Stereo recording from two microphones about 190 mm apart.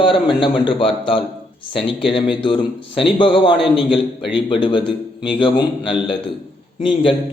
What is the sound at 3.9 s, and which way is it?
Speech, centre (ahead or behind).